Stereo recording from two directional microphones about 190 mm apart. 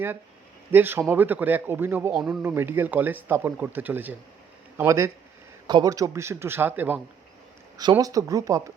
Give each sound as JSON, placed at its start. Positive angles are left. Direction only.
{"t": 0.7, "sound": "speech", "side_deg": -10}